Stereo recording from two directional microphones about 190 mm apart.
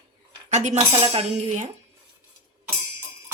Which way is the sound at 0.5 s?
35° right (ahead or behind).